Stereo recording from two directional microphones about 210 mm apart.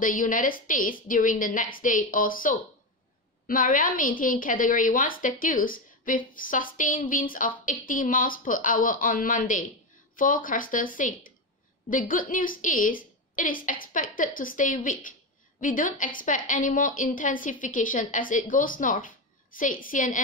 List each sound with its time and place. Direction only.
0.0 s a woman's voice: 40° left (ahead or behind)